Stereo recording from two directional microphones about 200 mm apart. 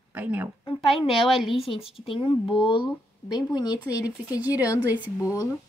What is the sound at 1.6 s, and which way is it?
Speech, 30° left (ahead or behind).